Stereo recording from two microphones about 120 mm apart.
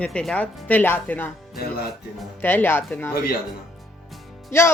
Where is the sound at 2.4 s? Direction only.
15° left (ahead or behind).